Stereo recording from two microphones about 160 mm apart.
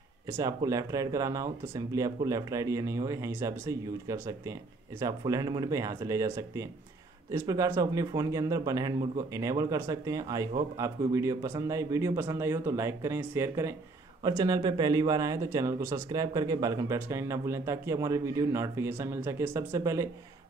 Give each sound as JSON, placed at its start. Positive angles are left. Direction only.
{"t": 0.3, "sound": "speech", "side_deg": -20}